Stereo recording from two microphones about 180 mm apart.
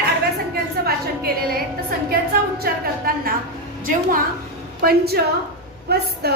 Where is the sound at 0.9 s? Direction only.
55° right (ahead or behind).